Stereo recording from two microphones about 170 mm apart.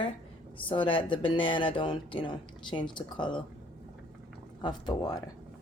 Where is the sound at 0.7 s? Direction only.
30° left (ahead or behind).